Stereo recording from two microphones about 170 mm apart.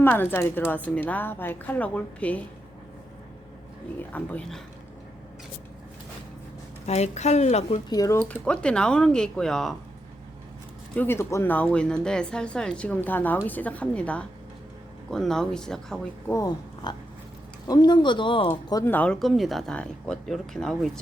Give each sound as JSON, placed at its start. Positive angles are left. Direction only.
{"t": 0.0, "sound": "speech", "side_deg": 10}
{"t": 4.1, "sound": "speech", "side_deg": 10}
{"t": 6.8, "sound": "a woman's voice", "side_deg": 40}
{"t": 7.9, "sound": "speech", "side_deg": 20}
{"t": 8.2, "sound": "speech", "side_deg": 5}
{"t": 10.9, "sound": "speech", "side_deg": 15}
{"t": 16.3, "sound": "speech", "side_deg": 20}
{"t": 18.9, "sound": "speech", "side_deg": 5}